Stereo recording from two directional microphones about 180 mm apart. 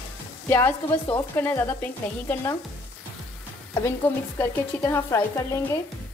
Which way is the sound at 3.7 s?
10° left (ahead or behind).